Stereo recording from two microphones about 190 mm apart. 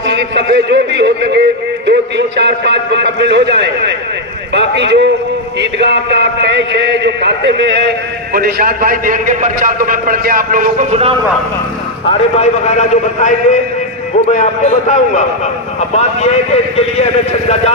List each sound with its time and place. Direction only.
0.1 s a man's voice: 65° right (ahead or behind); by 11.1 s 35° right (ahead or behind)
12.1 s a man's voice: 35° left (ahead or behind)